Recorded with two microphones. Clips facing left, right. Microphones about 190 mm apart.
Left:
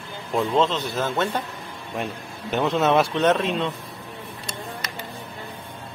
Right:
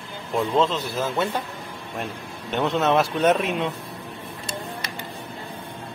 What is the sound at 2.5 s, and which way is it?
Speech, centre (ahead or behind).